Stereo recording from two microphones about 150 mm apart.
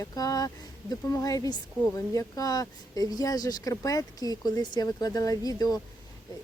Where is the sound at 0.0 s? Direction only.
25° left (ahead or behind).